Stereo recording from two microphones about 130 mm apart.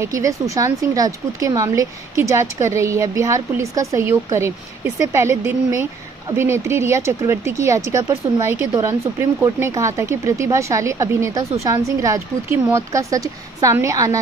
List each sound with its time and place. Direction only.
0.0 s speech: 25° right (ahead or behind)